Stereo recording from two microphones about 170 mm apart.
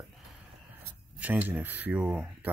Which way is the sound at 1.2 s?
10° right (ahead or behind).